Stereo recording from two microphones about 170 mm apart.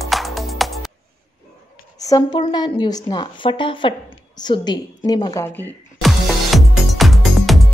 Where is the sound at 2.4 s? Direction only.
25° left (ahead or behind).